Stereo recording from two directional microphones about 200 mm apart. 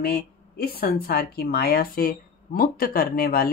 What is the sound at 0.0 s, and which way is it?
Speech, 50° left (ahead or behind).